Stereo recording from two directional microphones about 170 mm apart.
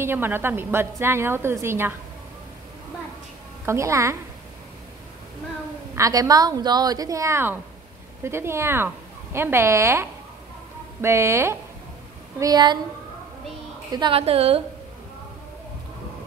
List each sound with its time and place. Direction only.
0.0 s a woman's voice: 15° right (ahead or behind)
3.6 s a woman's voice: 15° right (ahead or behind)
5.9 s a woman's voice: 20° right (ahead or behind)
13.8 s a woman's voice: 25° right (ahead or behind)